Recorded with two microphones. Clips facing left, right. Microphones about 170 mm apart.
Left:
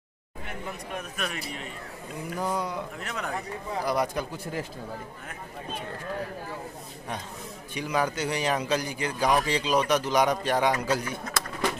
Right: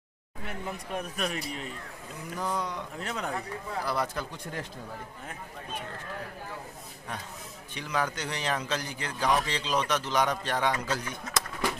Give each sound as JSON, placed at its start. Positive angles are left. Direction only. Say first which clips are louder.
{"t": 0.9, "sound": "a man's voice", "louder": "right 2 dB", "side_deg": -35}
{"t": 2.3, "sound": "a man's voice", "louder": "left 2 dB", "side_deg": 10}
{"t": 3.0, "sound": "speech", "louder": "even", "side_deg": -30}
{"t": 3.8, "sound": "a man's voice", "louder": "left 5 dB", "side_deg": 15}
{"t": 7.7, "sound": "a man's voice", "louder": "left 4 dB", "side_deg": 10}